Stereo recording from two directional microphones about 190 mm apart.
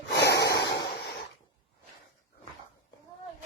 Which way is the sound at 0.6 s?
60° left (ahead or behind).